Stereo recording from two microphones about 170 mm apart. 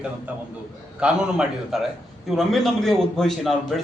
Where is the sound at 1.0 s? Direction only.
5° right (ahead or behind).